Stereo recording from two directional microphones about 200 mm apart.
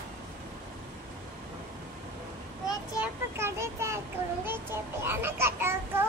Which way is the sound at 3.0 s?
10° right (ahead or behind).